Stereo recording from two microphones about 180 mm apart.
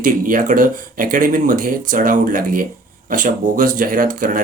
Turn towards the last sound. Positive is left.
turn(degrees=-50)  # may be behind; listen again after turning